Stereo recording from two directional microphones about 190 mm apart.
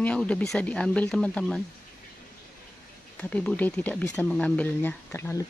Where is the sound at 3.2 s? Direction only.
5° left (ahead or behind).